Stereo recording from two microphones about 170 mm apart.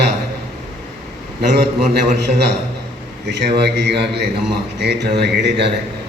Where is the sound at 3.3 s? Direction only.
90° right.